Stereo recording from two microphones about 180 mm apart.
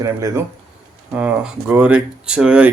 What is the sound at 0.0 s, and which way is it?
Speech, 15° right (ahead or behind).